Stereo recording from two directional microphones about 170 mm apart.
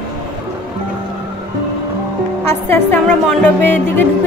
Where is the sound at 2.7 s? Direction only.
10° left (ahead or behind).